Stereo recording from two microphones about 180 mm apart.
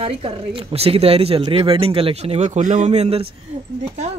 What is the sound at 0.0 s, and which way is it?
Speech, 30° right (ahead or behind).